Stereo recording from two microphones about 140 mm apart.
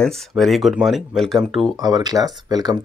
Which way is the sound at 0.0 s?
5° left (ahead or behind).